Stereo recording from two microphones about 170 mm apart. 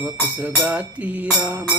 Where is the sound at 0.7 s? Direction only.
10° right (ahead or behind).